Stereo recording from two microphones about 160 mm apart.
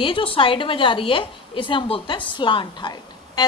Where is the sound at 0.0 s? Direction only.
35° left (ahead or behind).